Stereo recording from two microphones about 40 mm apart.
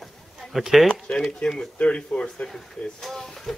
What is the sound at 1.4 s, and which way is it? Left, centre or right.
Speech, centre.